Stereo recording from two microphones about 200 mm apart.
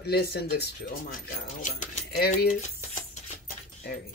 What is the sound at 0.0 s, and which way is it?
Speech, 50° left (ahead or behind).